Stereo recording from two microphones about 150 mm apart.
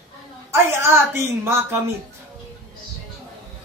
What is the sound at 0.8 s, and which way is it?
Speech, 15° right (ahead or behind).